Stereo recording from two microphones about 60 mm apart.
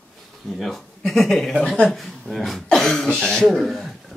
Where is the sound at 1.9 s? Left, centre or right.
Centre.